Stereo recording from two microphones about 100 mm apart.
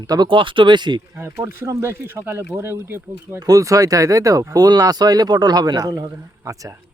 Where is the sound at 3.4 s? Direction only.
40° right (ahead or behind).